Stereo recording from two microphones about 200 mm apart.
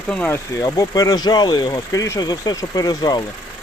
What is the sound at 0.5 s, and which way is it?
Speech, 20° left (ahead or behind).